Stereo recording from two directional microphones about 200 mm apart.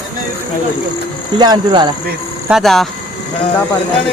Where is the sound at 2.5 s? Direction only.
Centre (ahead or behind).